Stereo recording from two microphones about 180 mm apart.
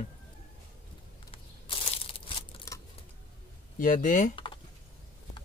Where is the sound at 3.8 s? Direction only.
45° left (ahead or behind).